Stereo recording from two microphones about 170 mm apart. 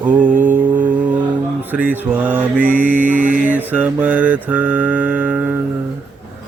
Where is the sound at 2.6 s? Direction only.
50° right (ahead or behind).